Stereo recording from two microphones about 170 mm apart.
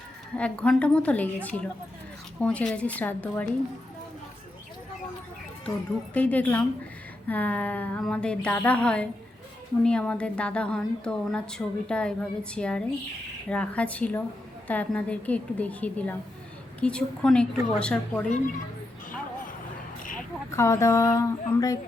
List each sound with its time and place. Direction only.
0.3 s a woman's voice: 5° left (ahead or behind)
6.1 s a woman's voice: 10° left (ahead or behind)
20.5 s a woman's voice: 15° left (ahead or behind)